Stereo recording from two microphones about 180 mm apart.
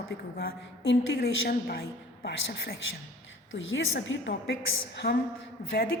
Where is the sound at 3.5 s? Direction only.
90° left; by 4.5 s 75° left (ahead or behind).